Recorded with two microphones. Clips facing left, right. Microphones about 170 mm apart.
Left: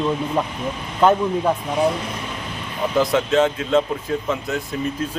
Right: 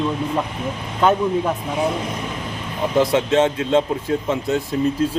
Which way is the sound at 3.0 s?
25° right (ahead or behind).